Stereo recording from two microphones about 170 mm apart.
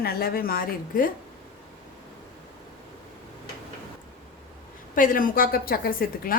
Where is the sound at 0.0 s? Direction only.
60° left (ahead or behind).